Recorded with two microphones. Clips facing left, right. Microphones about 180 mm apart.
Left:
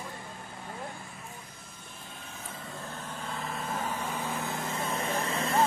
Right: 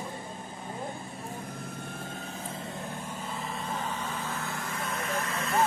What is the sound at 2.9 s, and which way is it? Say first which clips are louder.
Vehicle: right 1 dB; 10° right (ahead or behind).